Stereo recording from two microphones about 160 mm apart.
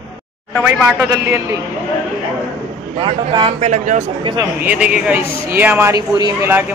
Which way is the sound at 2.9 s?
30° right (ahead or behind).